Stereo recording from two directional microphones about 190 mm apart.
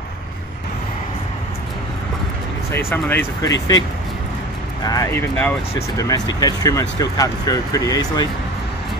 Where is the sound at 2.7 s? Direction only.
10° left (ahead or behind).